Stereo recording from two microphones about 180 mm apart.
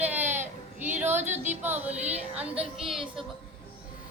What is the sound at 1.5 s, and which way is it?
Music, 10° right (ahead or behind).